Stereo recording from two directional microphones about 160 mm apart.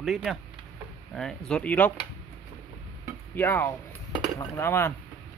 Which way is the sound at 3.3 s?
15° left (ahead or behind).